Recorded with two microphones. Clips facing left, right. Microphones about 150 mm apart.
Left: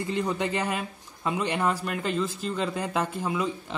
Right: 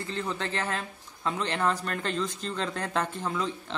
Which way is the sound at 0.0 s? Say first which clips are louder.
Left 5 dB; 15° left (ahead or behind).